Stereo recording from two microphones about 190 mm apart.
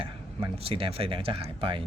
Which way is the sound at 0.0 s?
30° right (ahead or behind).